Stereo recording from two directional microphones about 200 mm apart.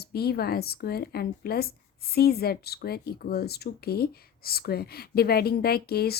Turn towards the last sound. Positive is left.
turn(degrees=50)  # may be behind; listen again after turning